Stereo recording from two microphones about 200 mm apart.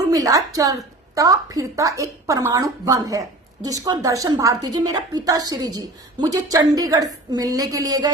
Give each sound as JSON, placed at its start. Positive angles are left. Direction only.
{"t": 0.1, "sound": "a woman's voice", "side_deg": -15}